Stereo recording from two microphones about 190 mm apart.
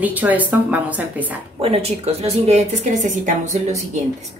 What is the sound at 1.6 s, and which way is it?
A woman's voice, 30° right (ahead or behind).